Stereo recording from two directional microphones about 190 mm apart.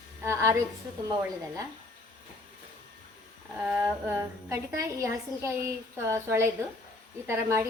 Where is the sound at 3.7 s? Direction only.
10° right (ahead or behind).